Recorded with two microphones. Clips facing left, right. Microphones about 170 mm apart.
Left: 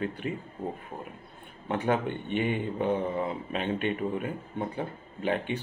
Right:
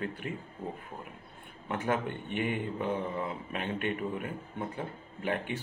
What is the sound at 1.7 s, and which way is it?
Speech, 30° left (ahead or behind).